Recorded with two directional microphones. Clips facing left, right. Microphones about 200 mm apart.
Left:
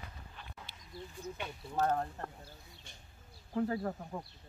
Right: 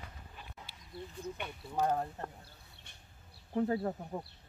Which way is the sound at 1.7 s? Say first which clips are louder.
Even; 10° right (ahead or behind).